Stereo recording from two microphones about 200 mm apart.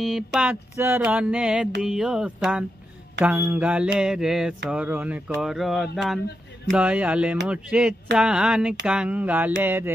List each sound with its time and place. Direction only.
0.0 s mantra: centre (ahead or behind)
6.7 s speech: 5° right (ahead or behind)
7.4 s mantra: 5° right (ahead or behind)
8.8 s speech: 5° right (ahead or behind)